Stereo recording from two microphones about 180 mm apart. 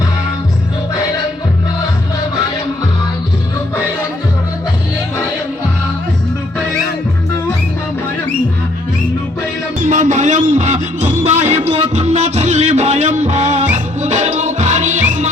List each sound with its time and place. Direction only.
9.8 s music: 45° right (ahead or behind)